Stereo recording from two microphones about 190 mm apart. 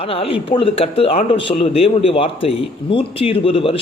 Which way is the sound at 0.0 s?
30° left (ahead or behind).